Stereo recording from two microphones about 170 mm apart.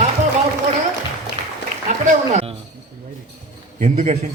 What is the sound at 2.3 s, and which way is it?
Speech, 40° right (ahead or behind).